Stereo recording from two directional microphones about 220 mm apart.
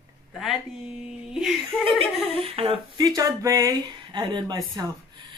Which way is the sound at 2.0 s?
25° right (ahead or behind).